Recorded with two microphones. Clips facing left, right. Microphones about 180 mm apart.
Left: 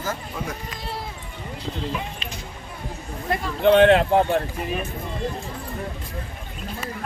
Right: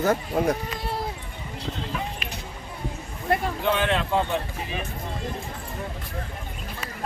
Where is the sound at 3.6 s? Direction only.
65° left (ahead or behind).